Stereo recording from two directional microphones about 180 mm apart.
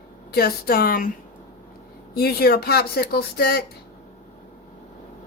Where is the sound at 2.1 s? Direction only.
60° left (ahead or behind).